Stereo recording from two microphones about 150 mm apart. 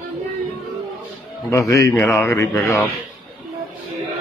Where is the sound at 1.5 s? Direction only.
20° left (ahead or behind).